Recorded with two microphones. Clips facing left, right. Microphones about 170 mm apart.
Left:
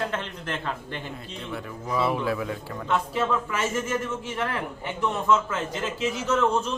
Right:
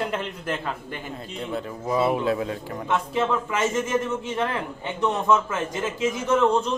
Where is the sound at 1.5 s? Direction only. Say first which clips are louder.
Right 4 dB; 25° right (ahead or behind).